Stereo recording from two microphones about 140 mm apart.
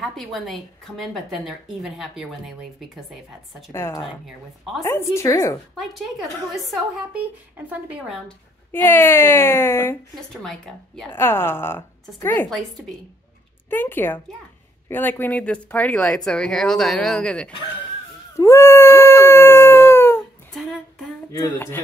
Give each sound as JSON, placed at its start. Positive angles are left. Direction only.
{"t": 0.0, "sound": "a woman's voice", "side_deg": 0}
{"t": 3.7, "sound": "a woman's voice", "side_deg": 15}
{"t": 5.8, "sound": "a woman's voice", "side_deg": 0}
{"t": 7.2, "sound": "speech", "side_deg": -10}
{"t": 8.8, "sound": "a woman's voice", "side_deg": 15}
{"t": 10.4, "sound": "a woman's voice", "side_deg": 0}
{"t": 11.1, "sound": "a woman's voice", "side_deg": 15}
{"t": 12.4, "sound": "a woman's voice", "side_deg": 0}
{"t": 13.7, "sound": "a woman's voice", "side_deg": 15}
{"t": 18.3, "sound": "howl", "side_deg": 20}
{"t": 20.5, "sound": "a sound", "side_deg": 0}
{"t": 21.3, "sound": "a woman's voice", "side_deg": 20}